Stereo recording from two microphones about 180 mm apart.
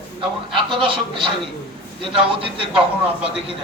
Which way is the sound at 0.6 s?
25° right (ahead or behind).